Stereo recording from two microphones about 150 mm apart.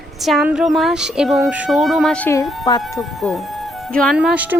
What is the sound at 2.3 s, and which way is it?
Speech, 25° left (ahead or behind).